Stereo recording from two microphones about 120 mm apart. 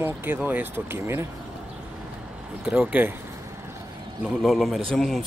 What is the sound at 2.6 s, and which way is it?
Speech, 10° right (ahead or behind).